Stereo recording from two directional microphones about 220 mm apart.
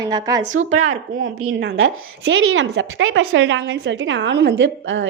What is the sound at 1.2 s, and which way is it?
A woman's voice, 70° right (ahead or behind).